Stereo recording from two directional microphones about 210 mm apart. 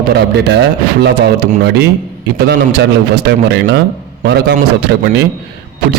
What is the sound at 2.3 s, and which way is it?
A man's voice, 50° right (ahead or behind).